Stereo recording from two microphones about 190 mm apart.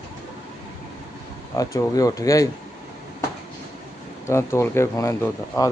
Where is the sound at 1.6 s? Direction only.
20° left (ahead or behind).